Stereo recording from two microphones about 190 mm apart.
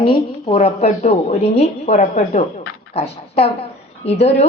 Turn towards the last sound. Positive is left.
turn(degrees=35)  # may be behind; listen again after turning